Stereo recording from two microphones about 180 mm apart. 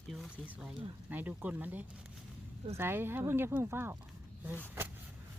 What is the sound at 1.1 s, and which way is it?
Speech, 10° right (ahead or behind).